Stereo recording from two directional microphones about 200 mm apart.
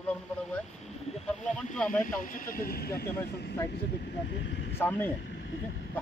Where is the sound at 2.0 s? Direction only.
40° left (ahead or behind).